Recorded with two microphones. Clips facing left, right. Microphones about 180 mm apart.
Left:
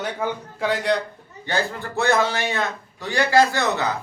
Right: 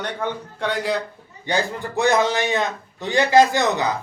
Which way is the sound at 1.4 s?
15° right (ahead or behind).